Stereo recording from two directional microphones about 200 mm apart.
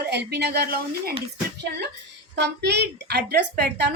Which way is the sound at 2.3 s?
55° right (ahead or behind).